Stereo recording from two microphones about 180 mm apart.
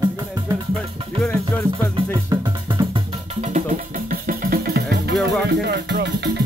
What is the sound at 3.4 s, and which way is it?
Music, 45° right (ahead or behind).